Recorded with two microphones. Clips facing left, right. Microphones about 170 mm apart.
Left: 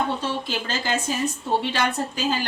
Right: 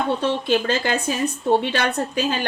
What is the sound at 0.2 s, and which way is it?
Speech, 60° right (ahead or behind).